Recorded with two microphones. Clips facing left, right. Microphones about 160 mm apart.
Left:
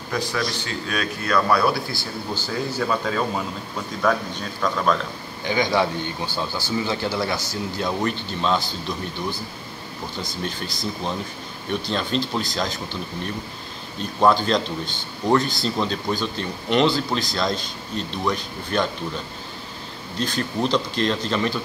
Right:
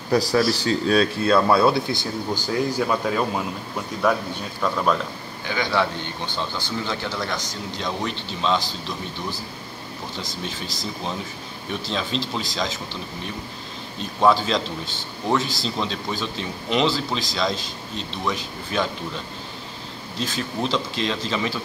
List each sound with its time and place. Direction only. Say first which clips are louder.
0.1 s a man's voice: right 7 dB; 35° right (ahead or behind); by 4.9 s 10° right (ahead or behind)
5.5 s a man's voice: left 2 dB; 15° left (ahead or behind)
13.9 s a man's voice: even; centre (ahead or behind)
20.2 s a man's voice: left 2 dB; centre (ahead or behind)